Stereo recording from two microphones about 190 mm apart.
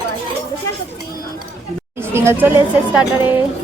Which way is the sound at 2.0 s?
15° right (ahead or behind).